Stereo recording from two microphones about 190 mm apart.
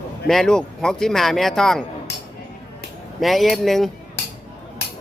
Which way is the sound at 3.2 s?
Centre (ahead or behind).